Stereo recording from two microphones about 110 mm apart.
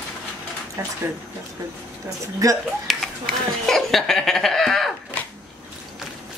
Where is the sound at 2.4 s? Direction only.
30° right (ahead or behind).